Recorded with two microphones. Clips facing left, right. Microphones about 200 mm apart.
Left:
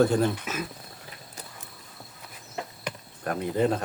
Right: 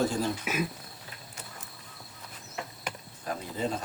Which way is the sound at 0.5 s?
10° right (ahead or behind).